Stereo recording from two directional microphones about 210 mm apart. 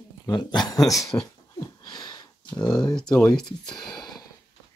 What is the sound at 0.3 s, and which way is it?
Speech, 20° left (ahead or behind).